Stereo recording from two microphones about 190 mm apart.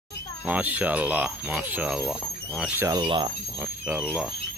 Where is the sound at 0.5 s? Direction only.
10° right (ahead or behind).